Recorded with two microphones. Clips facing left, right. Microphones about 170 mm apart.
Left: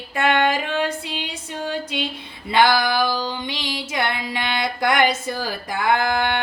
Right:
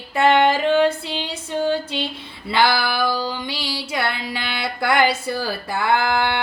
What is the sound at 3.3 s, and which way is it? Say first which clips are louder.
Music: even; 20° left (ahead or behind).